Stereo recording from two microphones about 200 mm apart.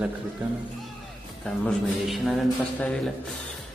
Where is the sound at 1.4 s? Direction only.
Centre (ahead or behind).